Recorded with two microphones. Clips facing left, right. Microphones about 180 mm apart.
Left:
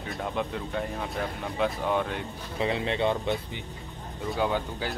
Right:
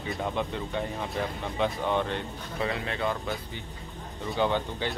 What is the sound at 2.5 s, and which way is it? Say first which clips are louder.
Speech: left 4 dB; 25° left (ahead or behind).